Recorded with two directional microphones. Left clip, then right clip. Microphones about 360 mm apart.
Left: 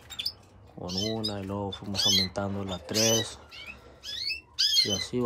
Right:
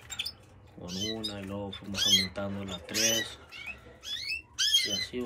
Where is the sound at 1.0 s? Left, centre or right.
Centre.